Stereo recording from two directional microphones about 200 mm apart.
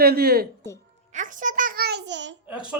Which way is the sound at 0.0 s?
50° right (ahead or behind).